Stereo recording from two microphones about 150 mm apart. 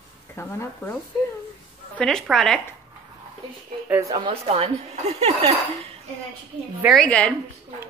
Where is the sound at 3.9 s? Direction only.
20° right (ahead or behind).